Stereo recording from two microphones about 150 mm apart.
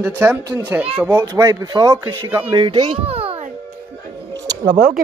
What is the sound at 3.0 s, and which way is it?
Music, 40° right (ahead or behind).